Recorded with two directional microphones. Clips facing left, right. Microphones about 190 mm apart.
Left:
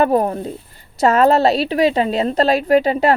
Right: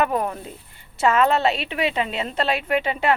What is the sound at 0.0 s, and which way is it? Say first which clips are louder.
A woman's voice: left 7 dB; 35° left (ahead or behind).